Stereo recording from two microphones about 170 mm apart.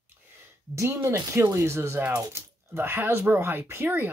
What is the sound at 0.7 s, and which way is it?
Speech, 15° right (ahead or behind).